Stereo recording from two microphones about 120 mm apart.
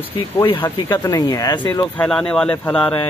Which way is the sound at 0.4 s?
40° left (ahead or behind).